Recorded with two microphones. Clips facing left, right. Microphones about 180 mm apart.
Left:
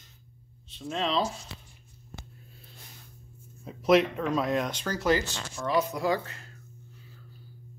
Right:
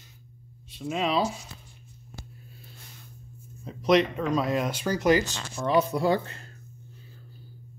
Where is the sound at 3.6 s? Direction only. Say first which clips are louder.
Even; 5° left (ahead or behind); by 6.5 s 30° right (ahead or behind).